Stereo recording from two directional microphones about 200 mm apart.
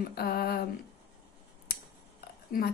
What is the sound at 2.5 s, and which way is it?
Speech, 45° left (ahead or behind).